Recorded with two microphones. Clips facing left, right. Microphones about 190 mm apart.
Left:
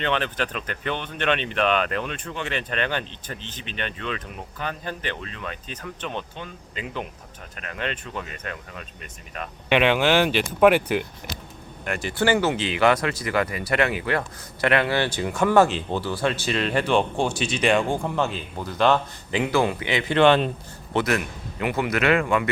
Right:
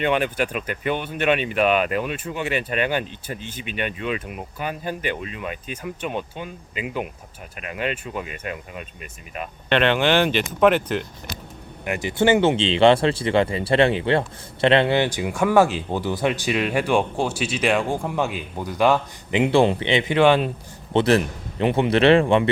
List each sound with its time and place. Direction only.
0.0 s speech: 10° right (ahead or behind)
9.6 s speech: 10° left (ahead or behind)
11.9 s speech: 20° right (ahead or behind)
19.3 s a man's voice: 25° right (ahead or behind)
20.1 s speech: 10° right (ahead or behind)
20.9 s a man's voice: 30° right (ahead or behind)